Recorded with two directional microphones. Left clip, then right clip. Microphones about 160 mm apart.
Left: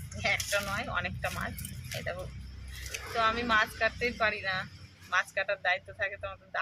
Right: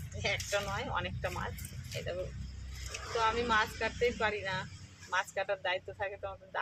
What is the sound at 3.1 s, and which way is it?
Speech, 25° right (ahead or behind).